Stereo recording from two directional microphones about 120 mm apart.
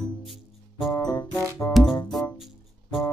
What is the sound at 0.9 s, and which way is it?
Music, 30° left (ahead or behind).